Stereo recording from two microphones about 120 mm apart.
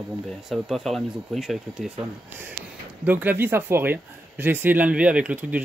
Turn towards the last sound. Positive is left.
turn(degrees=-15)  # may be behind; listen again after turning